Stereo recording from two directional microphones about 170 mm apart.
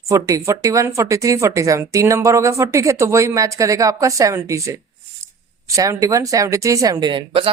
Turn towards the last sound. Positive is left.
turn(degrees=-30)  # may be behind; listen again after turning